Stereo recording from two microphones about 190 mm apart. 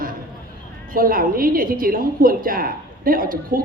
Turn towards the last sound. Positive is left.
turn(degrees=-50)  # may be behind; listen again after turning